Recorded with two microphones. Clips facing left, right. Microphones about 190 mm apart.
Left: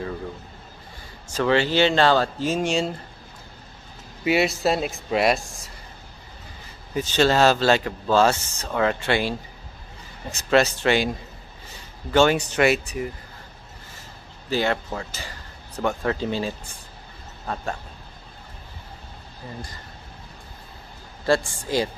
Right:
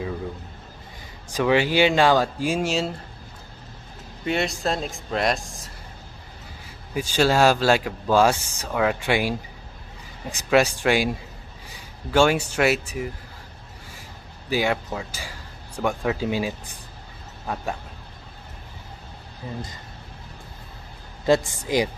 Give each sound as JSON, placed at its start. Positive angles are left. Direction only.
{"t": 1.3, "sound": "speech", "side_deg": -10}
{"t": 4.2, "sound": "speech", "side_deg": 5}
{"t": 6.9, "sound": "speech", "side_deg": -10}
{"t": 10.3, "sound": "speech", "side_deg": -10}
{"t": 14.5, "sound": "speech", "side_deg": -10}
{"t": 19.4, "sound": "speech", "side_deg": -15}
{"t": 21.3, "sound": "speech", "side_deg": -20}